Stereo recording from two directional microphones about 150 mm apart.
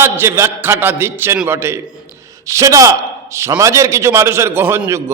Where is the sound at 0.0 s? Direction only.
15° right (ahead or behind).